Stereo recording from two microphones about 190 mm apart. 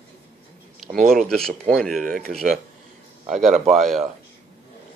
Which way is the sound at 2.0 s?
50° right (ahead or behind).